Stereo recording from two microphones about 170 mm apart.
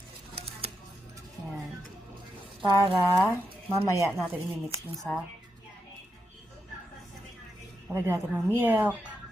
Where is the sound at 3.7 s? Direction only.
15° right (ahead or behind).